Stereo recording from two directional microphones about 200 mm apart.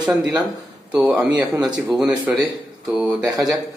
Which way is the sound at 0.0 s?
5° right (ahead or behind).